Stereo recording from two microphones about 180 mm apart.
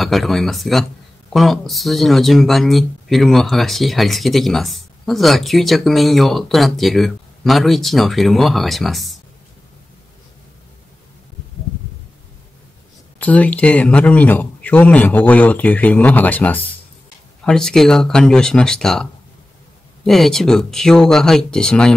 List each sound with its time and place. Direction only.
0.0 s speech: centre (ahead or behind)
13.2 s a man's voice: 10° left (ahead or behind)
20.1 s speech: centre (ahead or behind)